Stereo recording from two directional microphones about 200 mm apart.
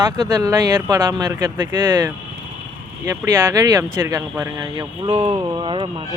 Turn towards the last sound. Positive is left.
turn(degrees=-25)  # may be behind; listen again after turning